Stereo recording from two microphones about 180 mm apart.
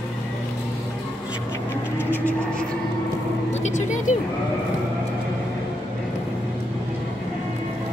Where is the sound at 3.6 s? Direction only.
45° left (ahead or behind).